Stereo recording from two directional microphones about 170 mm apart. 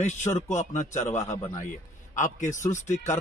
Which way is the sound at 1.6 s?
45° left (ahead or behind).